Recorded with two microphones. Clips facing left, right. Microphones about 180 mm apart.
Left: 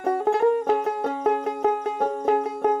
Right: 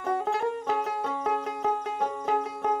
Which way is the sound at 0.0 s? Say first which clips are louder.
Left 7 dB; 55° left (ahead or behind).